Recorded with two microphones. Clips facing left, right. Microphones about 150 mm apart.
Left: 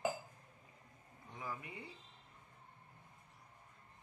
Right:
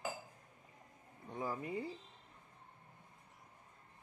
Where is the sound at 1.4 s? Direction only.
35° right (ahead or behind).